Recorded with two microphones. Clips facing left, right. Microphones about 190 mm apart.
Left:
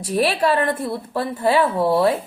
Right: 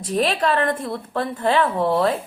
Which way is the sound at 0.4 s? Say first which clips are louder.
Left 2 dB; 10° left (ahead or behind).